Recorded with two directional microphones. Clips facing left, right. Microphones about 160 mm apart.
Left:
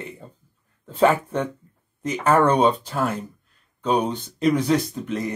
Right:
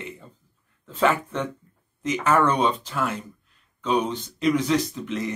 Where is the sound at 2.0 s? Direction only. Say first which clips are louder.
Left 2 dB; 35° left (ahead or behind).